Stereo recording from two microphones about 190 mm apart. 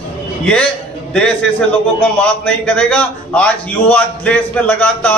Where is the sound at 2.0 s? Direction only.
5° left (ahead or behind).